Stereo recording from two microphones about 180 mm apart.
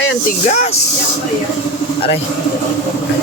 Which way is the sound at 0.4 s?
40° left (ahead or behind).